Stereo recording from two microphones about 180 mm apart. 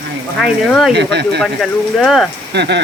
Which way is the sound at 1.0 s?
70° right (ahead or behind).